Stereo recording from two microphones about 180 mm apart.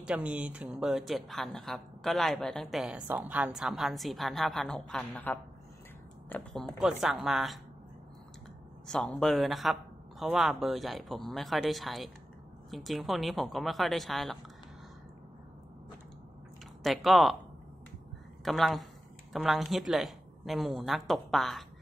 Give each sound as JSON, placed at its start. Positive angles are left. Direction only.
{"t": 0.0, "sound": "a woman's voice", "side_deg": -5}
{"t": 6.8, "sound": "a woman's voice", "side_deg": -5}
{"t": 8.8, "sound": "a woman's voice", "side_deg": 5}
{"t": 16.8, "sound": "a woman's voice", "side_deg": 0}
{"t": 18.4, "sound": "a woman's voice", "side_deg": 0}